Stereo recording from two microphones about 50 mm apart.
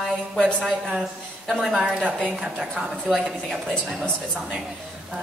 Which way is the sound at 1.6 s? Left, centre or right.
Centre.